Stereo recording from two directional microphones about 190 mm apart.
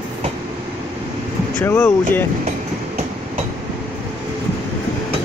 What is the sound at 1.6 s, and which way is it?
Speech, 10° left (ahead or behind).